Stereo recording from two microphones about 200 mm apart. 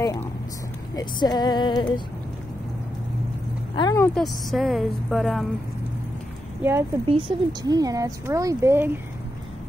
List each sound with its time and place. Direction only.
0.9 s speech: 20° left (ahead or behind)
3.7 s speech: 20° left (ahead or behind)
4.2 s speech: centre (ahead or behind)
6.6 s speech: 10° right (ahead or behind)
7.1 s speech: 25° right (ahead or behind)